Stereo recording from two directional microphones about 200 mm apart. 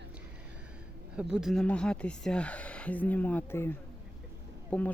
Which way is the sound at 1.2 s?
5° right (ahead or behind).